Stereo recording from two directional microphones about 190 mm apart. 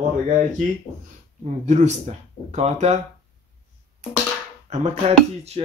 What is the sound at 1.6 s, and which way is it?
Speech, 40° right (ahead or behind).